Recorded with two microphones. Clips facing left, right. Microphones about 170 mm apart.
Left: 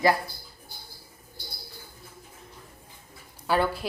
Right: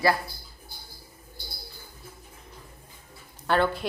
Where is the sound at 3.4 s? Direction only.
5° left (ahead or behind).